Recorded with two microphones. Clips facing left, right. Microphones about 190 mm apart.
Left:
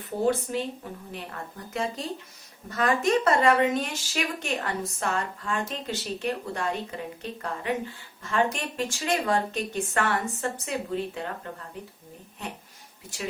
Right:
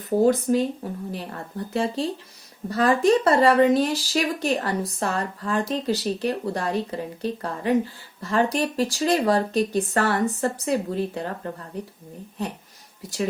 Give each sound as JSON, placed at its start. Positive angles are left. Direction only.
{"t": 0.5, "sound": "speech", "side_deg": -45}